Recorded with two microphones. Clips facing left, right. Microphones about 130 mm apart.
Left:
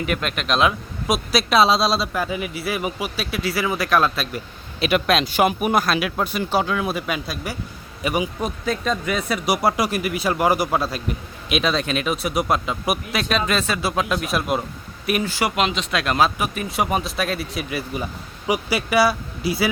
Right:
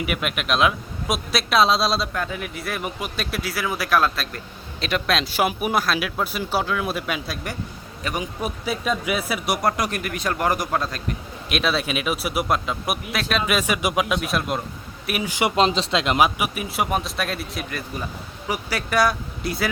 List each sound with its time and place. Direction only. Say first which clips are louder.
0.0 s speech: left 1 dB; 5° right (ahead or behind); by 8.3 s 10° left (ahead or behind)
8.4 s speech: left 2 dB; 10° right (ahead or behind)
14.2 s speech: left 2 dB; centre (ahead or behind)
15.3 s speech: even; 20° right (ahead or behind)
15.5 s speech: right 2 dB; 30° right (ahead or behind); by 19.6 s 5° left (ahead or behind)